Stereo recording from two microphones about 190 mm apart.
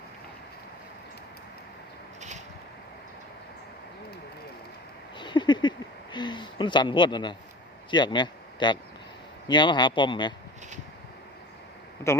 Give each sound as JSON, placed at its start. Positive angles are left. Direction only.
{"t": 5.1, "sound": "a sound", "side_deg": 25}
{"t": 7.9, "sound": "speech", "side_deg": 25}
{"t": 12.1, "sound": "speech", "side_deg": 15}